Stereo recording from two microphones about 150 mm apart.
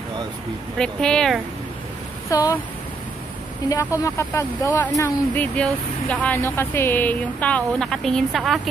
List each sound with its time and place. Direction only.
0.7 s speech: 5° left (ahead or behind)
2.2 s speech: 25° left (ahead or behind)
4.0 s speech: 20° left (ahead or behind); by 8.5 s centre (ahead or behind)